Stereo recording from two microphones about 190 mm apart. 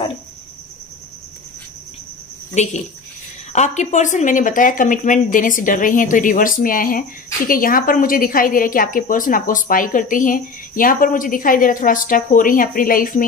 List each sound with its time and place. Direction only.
2.5 s a woman's voice: 40° left (ahead or behind)